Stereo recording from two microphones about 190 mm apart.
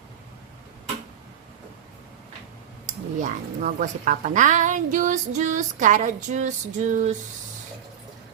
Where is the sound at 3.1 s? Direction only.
45° right (ahead or behind).